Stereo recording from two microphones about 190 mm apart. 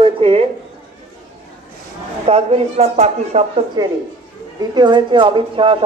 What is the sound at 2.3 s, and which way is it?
Speech, 35° right (ahead or behind).